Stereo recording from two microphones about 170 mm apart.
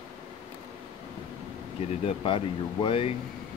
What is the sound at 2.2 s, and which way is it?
Speech, 30° left (ahead or behind).